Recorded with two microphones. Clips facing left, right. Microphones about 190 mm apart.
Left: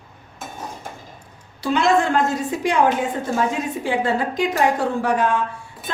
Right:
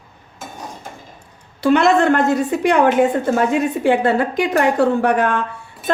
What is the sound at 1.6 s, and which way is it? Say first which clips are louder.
A woman's voice: right 5 dB; 60° right (ahead or behind).